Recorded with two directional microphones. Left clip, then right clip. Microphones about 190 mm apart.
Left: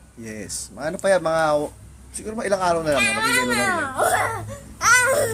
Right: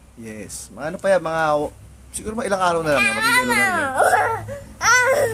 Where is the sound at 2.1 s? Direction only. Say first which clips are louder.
Right 1 dB; 20° right (ahead or behind); by 4.3 s 40° right (ahead or behind).